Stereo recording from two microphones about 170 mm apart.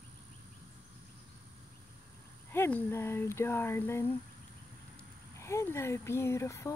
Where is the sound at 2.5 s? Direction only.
10° left (ahead or behind).